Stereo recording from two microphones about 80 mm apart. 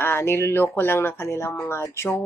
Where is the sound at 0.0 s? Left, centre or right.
Left.